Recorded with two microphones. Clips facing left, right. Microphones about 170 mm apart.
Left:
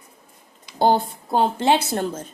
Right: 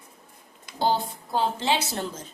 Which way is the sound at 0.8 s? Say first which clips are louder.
Left 6 dB; 55° left (ahead or behind).